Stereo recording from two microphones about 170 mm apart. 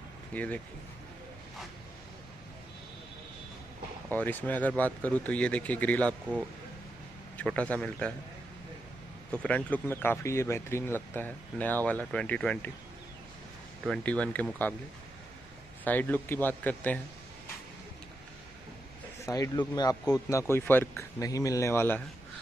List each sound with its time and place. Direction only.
0.3 s speech: 10° left (ahead or behind)
4.1 s speech: 10° left (ahead or behind)
7.3 s speech: 5° left (ahead or behind)
9.3 s speech: 5° left (ahead or behind)
13.8 s speech: 5° left (ahead or behind)
15.8 s speech: 10° left (ahead or behind)
19.2 s speech: 20° left (ahead or behind)